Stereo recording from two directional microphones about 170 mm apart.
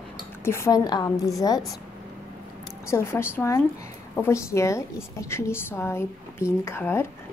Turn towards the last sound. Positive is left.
turn(degrees=15)  # may be behind; listen again after turning